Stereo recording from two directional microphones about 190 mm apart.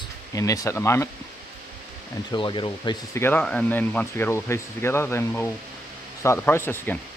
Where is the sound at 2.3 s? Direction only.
25° left (ahead or behind).